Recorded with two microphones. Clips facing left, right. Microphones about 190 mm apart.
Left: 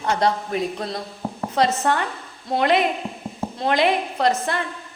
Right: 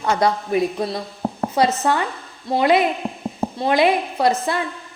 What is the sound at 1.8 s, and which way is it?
A woman's voice, 10° right (ahead or behind).